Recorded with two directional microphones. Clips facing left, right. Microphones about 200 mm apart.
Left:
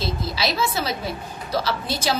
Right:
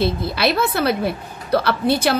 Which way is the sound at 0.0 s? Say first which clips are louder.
Right 6 dB; 60° right (ahead or behind).